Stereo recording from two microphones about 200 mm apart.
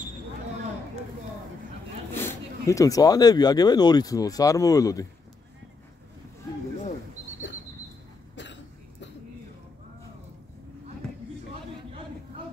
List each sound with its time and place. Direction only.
2.1 s speech: 15° left (ahead or behind)